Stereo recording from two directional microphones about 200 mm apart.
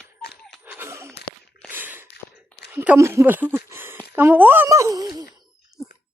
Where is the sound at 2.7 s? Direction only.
10° right (ahead or behind).